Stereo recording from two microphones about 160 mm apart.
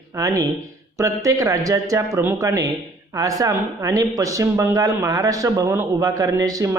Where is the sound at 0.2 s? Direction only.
20° right (ahead or behind).